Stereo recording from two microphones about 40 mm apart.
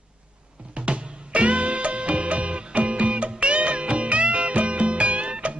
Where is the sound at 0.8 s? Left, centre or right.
Right.